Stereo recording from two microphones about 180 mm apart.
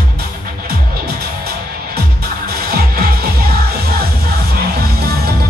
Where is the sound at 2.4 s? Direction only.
60° right (ahead or behind).